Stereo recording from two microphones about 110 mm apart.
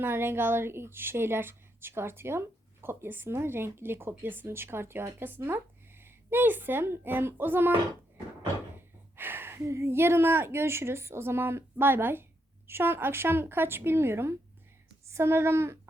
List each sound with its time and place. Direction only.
0.0 s a woman's voice: 20° right (ahead or behind)
9.1 s a woman's voice: 20° right (ahead or behind)